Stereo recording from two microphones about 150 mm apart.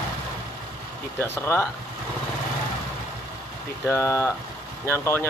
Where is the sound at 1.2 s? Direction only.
15° left (ahead or behind).